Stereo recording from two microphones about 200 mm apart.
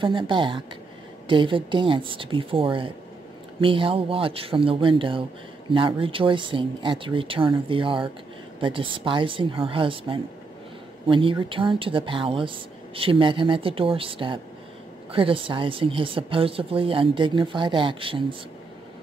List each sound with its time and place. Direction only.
0.0 s speech: 25° right (ahead or behind)